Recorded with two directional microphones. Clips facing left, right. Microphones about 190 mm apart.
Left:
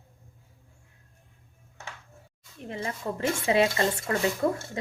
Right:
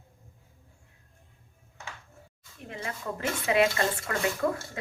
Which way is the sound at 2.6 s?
30° left (ahead or behind).